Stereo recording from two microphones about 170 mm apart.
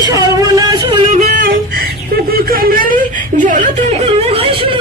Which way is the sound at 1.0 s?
45° right (ahead or behind).